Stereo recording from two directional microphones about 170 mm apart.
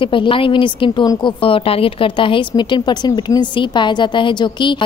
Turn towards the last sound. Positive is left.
turn(degrees=25)  # may be behind; listen again after turning